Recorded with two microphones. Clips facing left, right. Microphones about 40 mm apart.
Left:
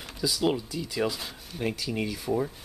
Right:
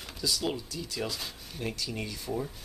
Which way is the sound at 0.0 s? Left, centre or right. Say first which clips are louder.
Left 4 dB; centre.